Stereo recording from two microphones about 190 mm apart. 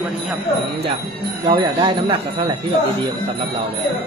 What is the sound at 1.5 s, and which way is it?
Speech, 25° right (ahead or behind).